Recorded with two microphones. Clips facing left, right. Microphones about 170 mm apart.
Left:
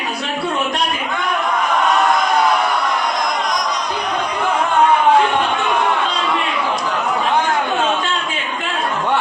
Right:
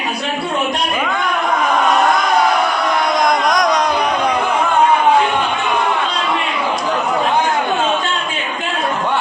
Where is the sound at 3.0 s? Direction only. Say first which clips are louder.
Right 5 dB; 70° right (ahead or behind).